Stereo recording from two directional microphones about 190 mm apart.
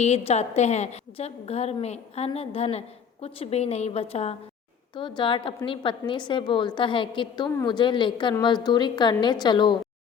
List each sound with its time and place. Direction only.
0.0 s a woman's voice: 35° left (ahead or behind)